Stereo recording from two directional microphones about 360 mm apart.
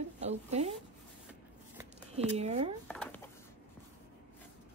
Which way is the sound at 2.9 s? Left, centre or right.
Centre.